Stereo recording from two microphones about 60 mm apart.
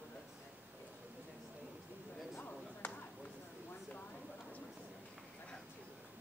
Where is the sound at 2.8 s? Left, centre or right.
Left.